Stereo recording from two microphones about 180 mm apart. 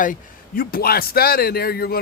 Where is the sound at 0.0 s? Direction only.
50° left (ahead or behind).